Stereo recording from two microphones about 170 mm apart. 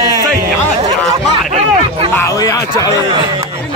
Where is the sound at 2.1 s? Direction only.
15° left (ahead or behind).